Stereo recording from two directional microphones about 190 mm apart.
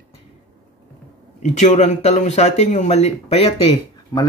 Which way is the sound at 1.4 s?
40° left (ahead or behind).